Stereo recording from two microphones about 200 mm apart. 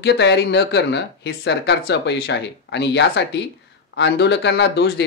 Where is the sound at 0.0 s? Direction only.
60° left (ahead or behind).